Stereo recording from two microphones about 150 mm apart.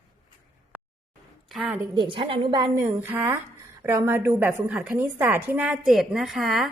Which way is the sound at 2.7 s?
15° right (ahead or behind).